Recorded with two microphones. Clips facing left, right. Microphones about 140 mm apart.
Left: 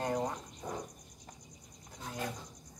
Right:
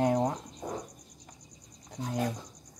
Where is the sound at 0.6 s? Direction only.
40° right (ahead or behind).